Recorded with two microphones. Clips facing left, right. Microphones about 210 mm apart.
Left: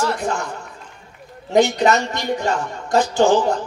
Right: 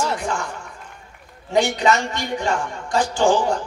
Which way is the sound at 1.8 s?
40° left (ahead or behind).